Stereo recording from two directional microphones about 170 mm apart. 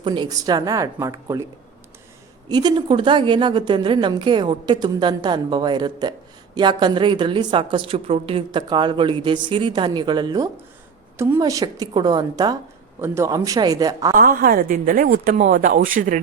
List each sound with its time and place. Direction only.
0.0 s a woman's voice: 25° right (ahead or behind)
2.5 s a woman's voice: 25° right (ahead or behind)
14.2 s speech: 55° right (ahead or behind)